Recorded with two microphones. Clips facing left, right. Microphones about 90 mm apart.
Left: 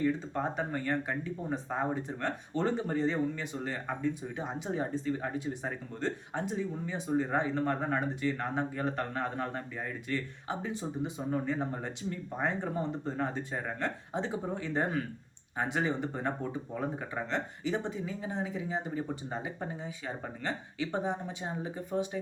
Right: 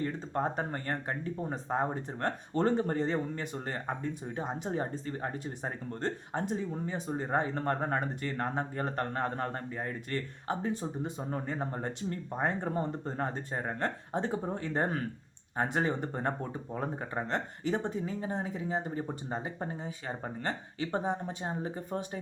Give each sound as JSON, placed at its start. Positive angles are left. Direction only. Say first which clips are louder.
{"t": 0.0, "sound": "speech", "louder": "left 1 dB", "side_deg": -40}
{"t": 20.2, "sound": "speech", "louder": "right 2 dB", "side_deg": -40}